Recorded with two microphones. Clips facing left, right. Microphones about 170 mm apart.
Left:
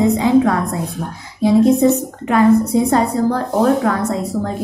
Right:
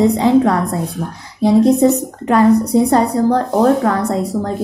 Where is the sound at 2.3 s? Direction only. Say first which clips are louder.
Right 1 dB; 35° right (ahead or behind).